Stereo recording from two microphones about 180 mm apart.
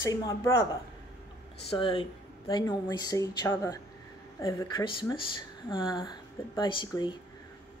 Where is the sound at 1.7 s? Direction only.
30° left (ahead or behind).